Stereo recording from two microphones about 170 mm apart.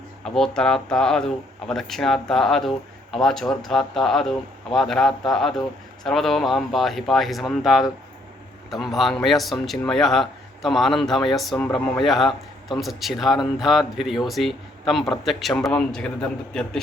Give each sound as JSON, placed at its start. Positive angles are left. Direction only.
{"t": 0.3, "sound": "speech", "side_deg": 5}